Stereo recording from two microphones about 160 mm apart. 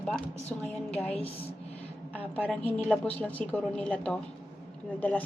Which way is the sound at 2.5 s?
10° left (ahead or behind).